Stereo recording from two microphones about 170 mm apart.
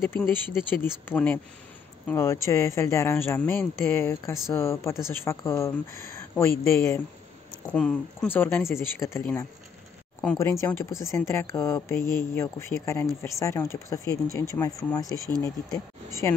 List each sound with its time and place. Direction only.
0.0 s speech: 15° left (ahead or behind)
7.6 s speech: 5° left (ahead or behind)